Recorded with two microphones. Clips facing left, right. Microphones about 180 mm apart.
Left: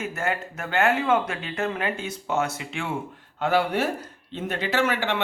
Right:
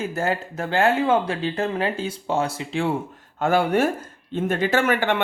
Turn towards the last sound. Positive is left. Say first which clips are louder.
# right 4 dB
turn(degrees=-50)  # may be behind; listen again after turning